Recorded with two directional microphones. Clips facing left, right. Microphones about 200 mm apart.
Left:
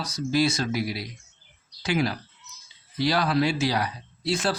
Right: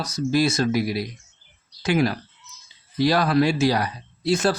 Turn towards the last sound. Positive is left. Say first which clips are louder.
# right 5 dB
turn(degrees=-45)  # may be behind; listen again after turning